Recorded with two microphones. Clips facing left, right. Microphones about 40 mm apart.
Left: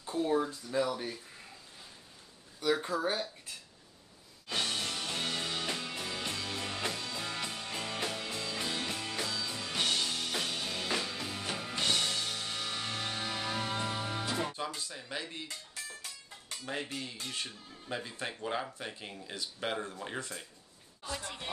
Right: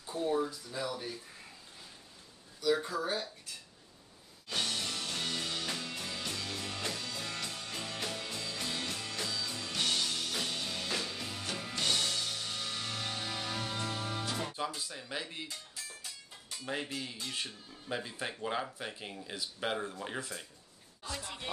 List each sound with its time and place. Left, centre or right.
0.2 s speech: left
2.8 s speech: left
4.5 s music: centre
14.8 s speech: centre
16.6 s speech: centre